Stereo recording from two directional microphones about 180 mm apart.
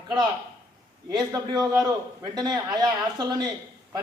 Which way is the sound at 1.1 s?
20° right (ahead or behind).